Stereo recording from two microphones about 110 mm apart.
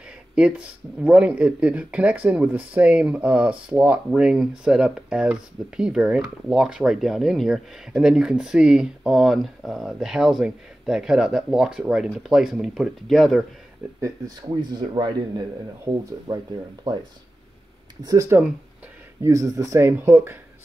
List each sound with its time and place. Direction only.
0.4 s speech: 10° right (ahead or behind)
14.0 s speech: 35° right (ahead or behind)
16.3 s speech: 20° right (ahead or behind)
16.9 s speech: 40° right (ahead or behind)
18.0 s speech: 30° right (ahead or behind)